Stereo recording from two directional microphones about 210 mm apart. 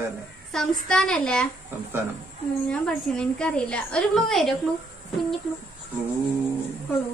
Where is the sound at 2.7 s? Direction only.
5° left (ahead or behind).